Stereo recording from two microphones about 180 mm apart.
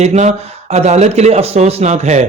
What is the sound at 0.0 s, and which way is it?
A man's voice, 40° right (ahead or behind).